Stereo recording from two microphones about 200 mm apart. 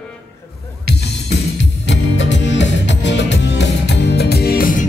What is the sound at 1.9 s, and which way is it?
Music, 65° left (ahead or behind).